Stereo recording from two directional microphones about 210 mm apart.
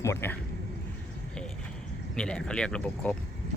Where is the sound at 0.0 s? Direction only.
10° left (ahead or behind).